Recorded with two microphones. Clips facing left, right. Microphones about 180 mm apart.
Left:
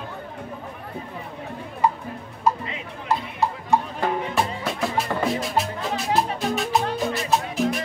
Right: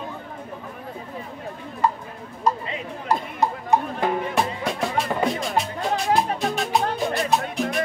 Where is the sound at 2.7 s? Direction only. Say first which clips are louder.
Right 1 dB; 35° right (ahead or behind).